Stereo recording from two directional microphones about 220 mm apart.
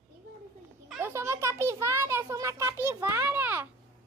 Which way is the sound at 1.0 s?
10° right (ahead or behind).